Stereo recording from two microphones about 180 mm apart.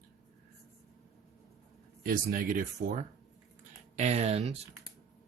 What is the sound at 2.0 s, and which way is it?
Speech, 55° right (ahead or behind).